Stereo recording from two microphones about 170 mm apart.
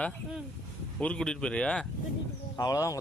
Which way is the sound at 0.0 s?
5° left (ahead or behind).